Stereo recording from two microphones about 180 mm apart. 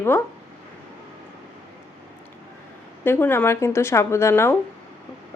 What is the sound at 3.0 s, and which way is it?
A woman's voice, 10° left (ahead or behind).